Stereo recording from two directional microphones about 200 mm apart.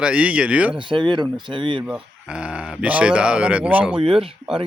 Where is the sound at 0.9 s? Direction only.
25° right (ahead or behind).